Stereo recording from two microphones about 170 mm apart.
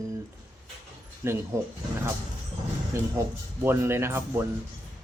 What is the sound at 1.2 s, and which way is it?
Speech, 15° right (ahead or behind).